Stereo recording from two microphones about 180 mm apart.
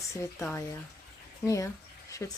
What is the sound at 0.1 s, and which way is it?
Speech, 15° left (ahead or behind).